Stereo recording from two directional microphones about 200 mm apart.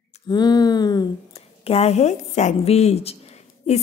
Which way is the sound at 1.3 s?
30° left (ahead or behind).